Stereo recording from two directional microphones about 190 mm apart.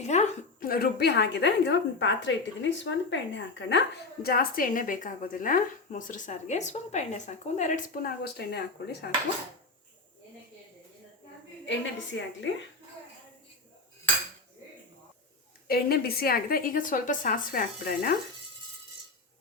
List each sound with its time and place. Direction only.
0.0 s a sound: 35° left (ahead or behind)
0.7 s a woman's voice: 55° left (ahead or behind)
12.1 s a woman's voice: 75° left (ahead or behind)
15.6 s a woman's voice: 55° left (ahead or behind)